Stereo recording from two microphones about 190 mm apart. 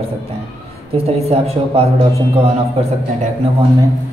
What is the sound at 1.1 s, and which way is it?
Speech, 30° right (ahead or behind).